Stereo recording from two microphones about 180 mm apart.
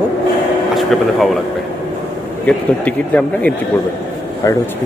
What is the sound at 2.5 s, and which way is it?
Speech, 5° left (ahead or behind).